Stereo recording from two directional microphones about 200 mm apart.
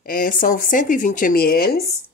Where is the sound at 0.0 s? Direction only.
45° left (ahead or behind).